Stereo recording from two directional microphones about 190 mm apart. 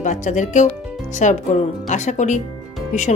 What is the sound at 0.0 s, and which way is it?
Speech, 40° left (ahead or behind).